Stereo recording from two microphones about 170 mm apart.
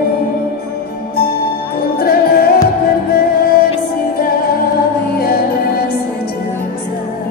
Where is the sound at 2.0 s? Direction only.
65° left (ahead or behind).